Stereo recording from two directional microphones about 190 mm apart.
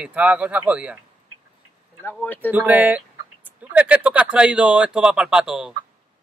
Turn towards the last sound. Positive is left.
turn(degrees=-5)  # may be behind; listen again after turning